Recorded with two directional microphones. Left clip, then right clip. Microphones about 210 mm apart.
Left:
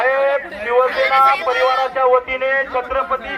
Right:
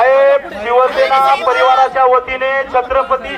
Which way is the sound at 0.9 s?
30° right (ahead or behind).